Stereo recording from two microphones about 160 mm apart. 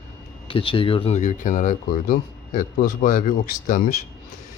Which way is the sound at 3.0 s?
50° left (ahead or behind).